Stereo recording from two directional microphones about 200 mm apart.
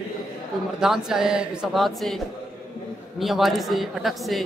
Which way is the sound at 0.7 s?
5° right (ahead or behind).